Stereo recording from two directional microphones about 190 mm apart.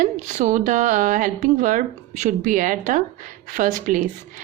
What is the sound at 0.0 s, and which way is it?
Speech, 40° right (ahead or behind).